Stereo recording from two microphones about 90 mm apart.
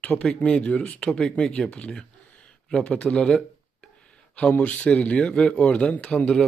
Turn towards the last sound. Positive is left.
turn(degrees=10)  # may be behind; listen again after turning